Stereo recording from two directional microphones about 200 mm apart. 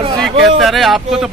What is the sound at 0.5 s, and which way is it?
Speech, centre (ahead or behind).